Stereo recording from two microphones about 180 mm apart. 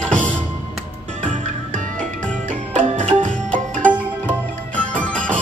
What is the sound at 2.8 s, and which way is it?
Music, 45° right (ahead or behind).